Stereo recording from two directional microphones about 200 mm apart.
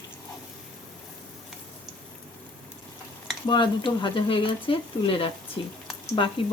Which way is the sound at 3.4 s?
20° left (ahead or behind).